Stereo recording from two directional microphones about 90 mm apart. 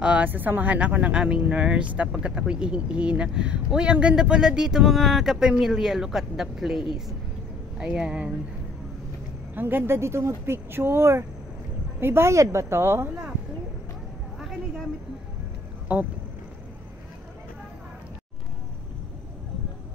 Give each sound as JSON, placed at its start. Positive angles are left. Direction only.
{"t": 0.0, "sound": "speech", "side_deg": -15}
{"t": 9.6, "sound": "speech", "side_deg": -25}
{"t": 15.9, "sound": "speech", "side_deg": -20}